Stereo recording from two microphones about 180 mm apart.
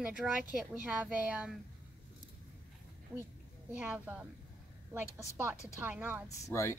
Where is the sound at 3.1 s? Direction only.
10° right (ahead or behind).